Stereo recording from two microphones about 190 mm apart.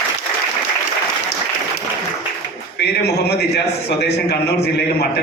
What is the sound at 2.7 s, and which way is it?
A man's voice, 60° left (ahead or behind).